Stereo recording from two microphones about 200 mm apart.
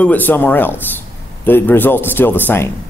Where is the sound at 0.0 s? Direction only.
10° left (ahead or behind).